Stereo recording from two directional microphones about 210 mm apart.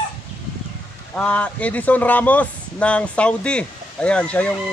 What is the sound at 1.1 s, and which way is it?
Speech, 5° left (ahead or behind).